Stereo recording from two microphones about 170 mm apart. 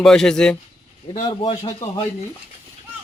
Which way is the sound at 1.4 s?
30° left (ahead or behind).